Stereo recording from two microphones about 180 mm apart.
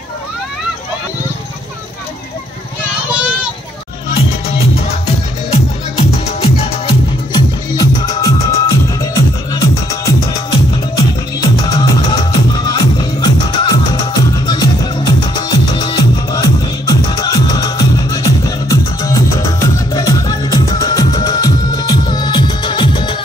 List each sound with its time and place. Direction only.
4.1 s music: 35° left (ahead or behind)
11.6 s music: 20° left (ahead or behind)